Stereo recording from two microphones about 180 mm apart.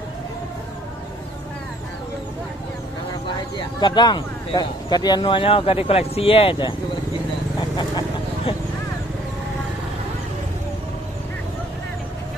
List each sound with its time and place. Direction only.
3.5 s speech: 25° left (ahead or behind)